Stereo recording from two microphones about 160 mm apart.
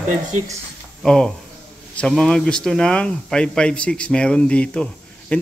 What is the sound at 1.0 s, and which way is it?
Speech, 5° left (ahead or behind).